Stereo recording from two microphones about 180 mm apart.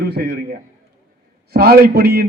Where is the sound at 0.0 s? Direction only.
65° right (ahead or behind).